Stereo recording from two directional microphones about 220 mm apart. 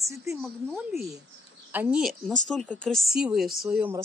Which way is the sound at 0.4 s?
5° right (ahead or behind).